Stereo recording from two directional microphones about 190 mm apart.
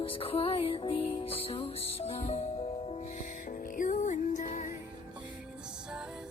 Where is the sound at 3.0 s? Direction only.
45° left (ahead or behind).